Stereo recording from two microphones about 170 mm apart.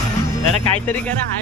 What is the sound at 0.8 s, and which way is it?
Speech, 10° left (ahead or behind).